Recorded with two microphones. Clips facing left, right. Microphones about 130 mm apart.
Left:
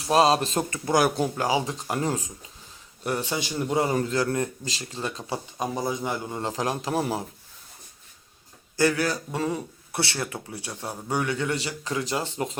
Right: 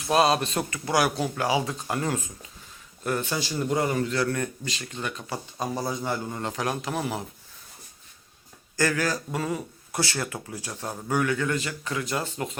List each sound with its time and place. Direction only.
0.0 s a man's voice: 25° left (ahead or behind)
1.4 s a man's voice: 20° left (ahead or behind)
5.5 s a man's voice: 15° left (ahead or behind)
6.4 s speech: 30° left (ahead or behind)
8.8 s a man's voice: 20° left (ahead or behind)